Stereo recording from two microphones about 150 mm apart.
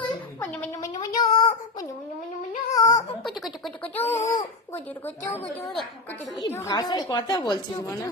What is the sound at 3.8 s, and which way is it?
Speech, 10° left (ahead or behind).